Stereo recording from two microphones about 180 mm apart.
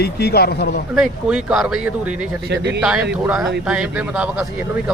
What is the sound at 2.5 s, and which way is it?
Speech, 65° right (ahead or behind).